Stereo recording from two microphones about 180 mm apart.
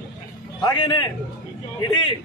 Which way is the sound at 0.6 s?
25° left (ahead or behind).